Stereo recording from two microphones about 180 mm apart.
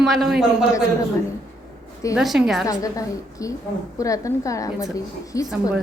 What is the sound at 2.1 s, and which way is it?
Speech, centre (ahead or behind).